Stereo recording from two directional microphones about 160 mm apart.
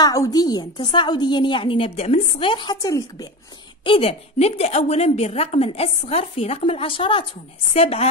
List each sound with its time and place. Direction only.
0.0 s a woman's voice: 20° left (ahead or behind)
3.8 s a woman's voice: 35° left (ahead or behind)